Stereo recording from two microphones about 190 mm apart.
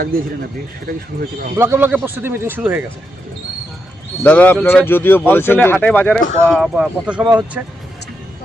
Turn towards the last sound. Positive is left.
turn(degrees=-10)  # may be behind; listen again after turning